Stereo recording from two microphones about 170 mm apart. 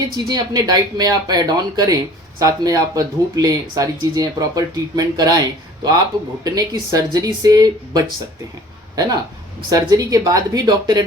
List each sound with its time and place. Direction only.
0.3 s speech: 25° right (ahead or behind)
9.6 s speech: 20° right (ahead or behind)